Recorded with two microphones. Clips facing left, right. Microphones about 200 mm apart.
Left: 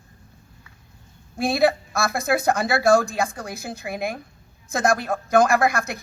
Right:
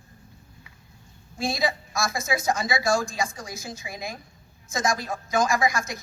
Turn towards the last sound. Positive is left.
turn(degrees=60)  # may be behind; listen again after turning